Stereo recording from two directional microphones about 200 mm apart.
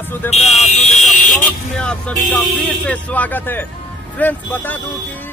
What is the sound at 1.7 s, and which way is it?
Speech, 5° left (ahead or behind).